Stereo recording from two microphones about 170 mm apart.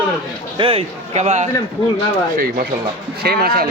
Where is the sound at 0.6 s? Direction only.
35° right (ahead or behind).